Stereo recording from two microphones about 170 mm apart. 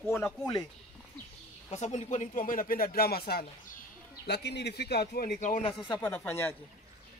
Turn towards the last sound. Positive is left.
turn(degrees=10)  # may be behind; listen again after turning